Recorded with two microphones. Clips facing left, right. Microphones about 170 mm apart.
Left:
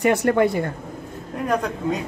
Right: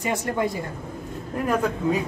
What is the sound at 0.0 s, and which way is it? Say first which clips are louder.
Speech: left 7 dB; 70° left (ahead or behind).